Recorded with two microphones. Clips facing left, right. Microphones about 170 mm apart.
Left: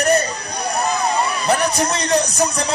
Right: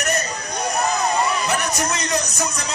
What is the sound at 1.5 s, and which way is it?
Music, 30° left (ahead or behind).